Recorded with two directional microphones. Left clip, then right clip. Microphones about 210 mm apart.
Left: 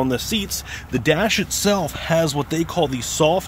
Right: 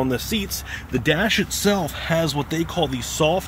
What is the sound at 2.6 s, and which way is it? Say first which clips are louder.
Speech: left 4 dB; 50° left (ahead or behind).